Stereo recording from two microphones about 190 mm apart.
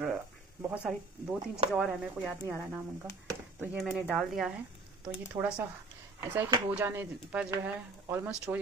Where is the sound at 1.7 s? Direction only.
5° right (ahead or behind).